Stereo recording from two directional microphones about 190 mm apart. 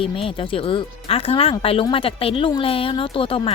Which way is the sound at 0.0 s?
30° left (ahead or behind).